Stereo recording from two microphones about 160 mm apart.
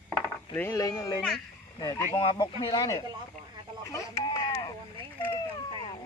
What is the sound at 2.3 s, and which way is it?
Speech, 20° left (ahead or behind).